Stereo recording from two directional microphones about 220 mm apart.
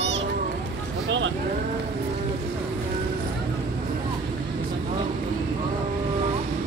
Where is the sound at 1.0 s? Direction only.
55° right (ahead or behind).